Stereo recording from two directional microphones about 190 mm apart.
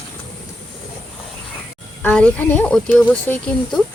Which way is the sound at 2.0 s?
5° left (ahead or behind).